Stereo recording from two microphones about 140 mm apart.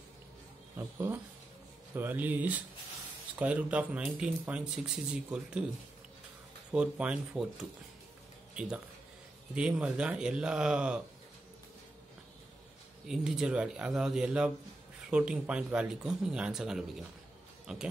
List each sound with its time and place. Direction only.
0.7 s speech: 15° right (ahead or behind)
6.7 s speech: 5° right (ahead or behind)
8.5 s speech: 5° right (ahead or behind)
13.1 s speech: 5° right (ahead or behind)